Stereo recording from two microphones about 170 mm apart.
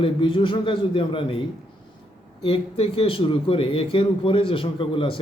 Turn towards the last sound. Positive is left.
turn(degrees=30)  # may be behind; listen again after turning